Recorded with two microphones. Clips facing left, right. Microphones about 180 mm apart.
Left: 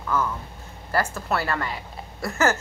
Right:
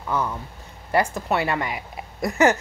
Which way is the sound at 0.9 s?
15° right (ahead or behind).